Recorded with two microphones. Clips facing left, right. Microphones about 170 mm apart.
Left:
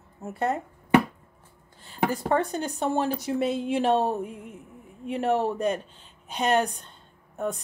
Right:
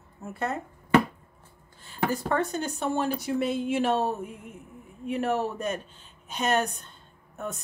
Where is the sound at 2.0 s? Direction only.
25° left (ahead or behind).